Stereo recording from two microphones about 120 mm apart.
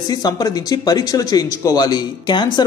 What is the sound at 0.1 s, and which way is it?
Speech, 35° left (ahead or behind).